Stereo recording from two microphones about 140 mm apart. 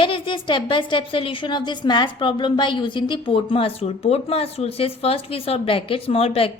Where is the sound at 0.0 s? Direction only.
35° left (ahead or behind).